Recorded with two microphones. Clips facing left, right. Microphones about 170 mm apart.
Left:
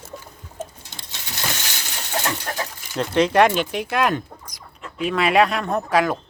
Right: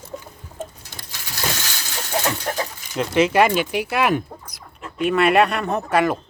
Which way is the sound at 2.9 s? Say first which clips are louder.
Even; 5° right (ahead or behind).